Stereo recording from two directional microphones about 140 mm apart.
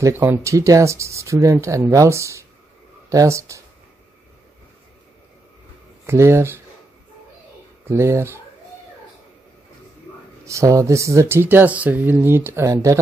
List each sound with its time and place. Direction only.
0.0 s speech: 15° right (ahead or behind)
6.0 s speech: 20° right (ahead or behind)
7.9 s speech: 20° right (ahead or behind)
10.4 s speech: 20° right (ahead or behind)